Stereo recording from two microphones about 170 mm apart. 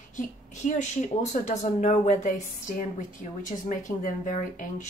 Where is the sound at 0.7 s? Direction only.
45° left (ahead or behind).